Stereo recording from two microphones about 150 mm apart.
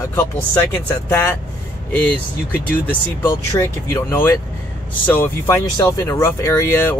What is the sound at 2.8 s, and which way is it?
Speech, 15° left (ahead or behind).